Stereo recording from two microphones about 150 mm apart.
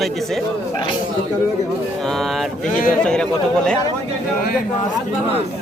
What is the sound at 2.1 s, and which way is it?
Speech, centre (ahead or behind).